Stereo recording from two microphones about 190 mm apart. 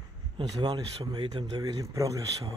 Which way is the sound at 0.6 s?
20° right (ahead or behind).